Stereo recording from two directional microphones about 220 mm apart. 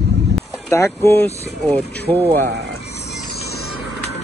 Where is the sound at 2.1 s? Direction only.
20° right (ahead or behind).